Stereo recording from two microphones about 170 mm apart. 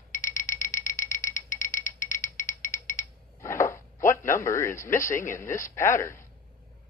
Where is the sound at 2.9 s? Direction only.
15° left (ahead or behind).